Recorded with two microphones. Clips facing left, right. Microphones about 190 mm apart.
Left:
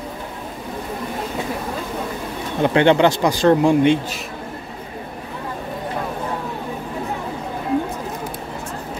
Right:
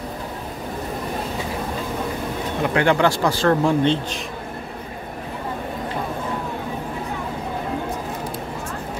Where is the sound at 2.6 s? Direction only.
25° left (ahead or behind).